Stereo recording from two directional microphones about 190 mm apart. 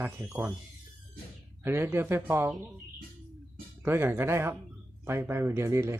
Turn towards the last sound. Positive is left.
turn(degrees=-15)  # may be behind; listen again after turning